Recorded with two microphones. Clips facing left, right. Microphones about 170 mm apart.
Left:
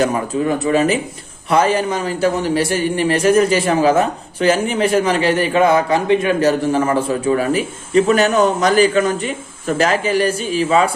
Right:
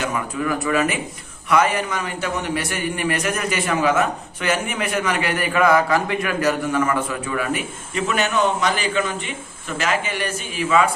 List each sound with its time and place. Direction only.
0.0 s a man's voice: 30° left (ahead or behind)